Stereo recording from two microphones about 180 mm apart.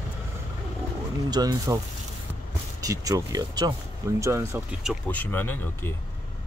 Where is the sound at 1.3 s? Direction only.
20° right (ahead or behind).